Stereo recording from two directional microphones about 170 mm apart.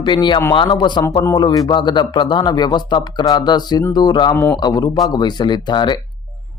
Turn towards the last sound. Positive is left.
turn(degrees=25)  # may be behind; listen again after turning